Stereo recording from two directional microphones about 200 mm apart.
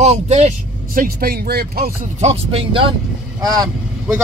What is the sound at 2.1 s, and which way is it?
Speech, 30° right (ahead or behind).